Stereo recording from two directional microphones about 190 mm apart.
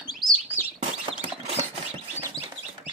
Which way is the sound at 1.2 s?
35° right (ahead or behind).